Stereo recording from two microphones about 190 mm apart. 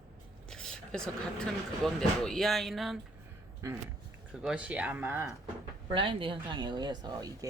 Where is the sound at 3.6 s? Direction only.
15° right (ahead or behind).